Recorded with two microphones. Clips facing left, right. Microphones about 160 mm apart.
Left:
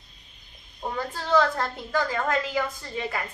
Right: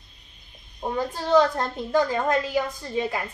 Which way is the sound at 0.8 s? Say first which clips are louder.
Right 4 dB; 15° right (ahead or behind).